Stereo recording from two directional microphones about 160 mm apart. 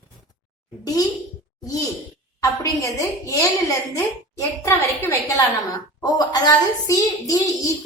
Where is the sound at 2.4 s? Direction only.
20° left (ahead or behind).